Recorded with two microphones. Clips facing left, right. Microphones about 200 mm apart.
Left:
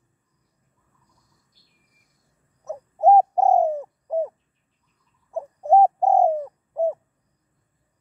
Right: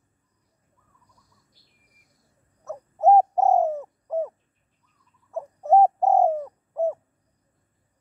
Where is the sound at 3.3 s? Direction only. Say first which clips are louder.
Left 2 dB; 15° left (ahead or behind).